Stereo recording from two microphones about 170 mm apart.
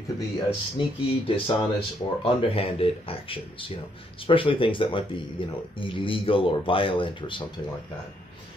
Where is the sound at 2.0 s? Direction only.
30° left (ahead or behind).